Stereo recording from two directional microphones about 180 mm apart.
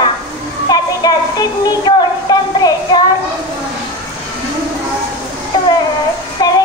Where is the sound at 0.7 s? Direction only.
20° left (ahead or behind).